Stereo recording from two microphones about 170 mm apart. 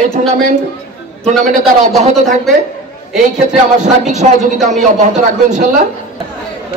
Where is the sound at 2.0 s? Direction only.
40° right (ahead or behind).